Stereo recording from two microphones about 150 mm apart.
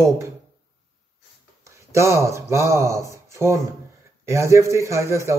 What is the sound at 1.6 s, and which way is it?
A man's voice, 20° right (ahead or behind).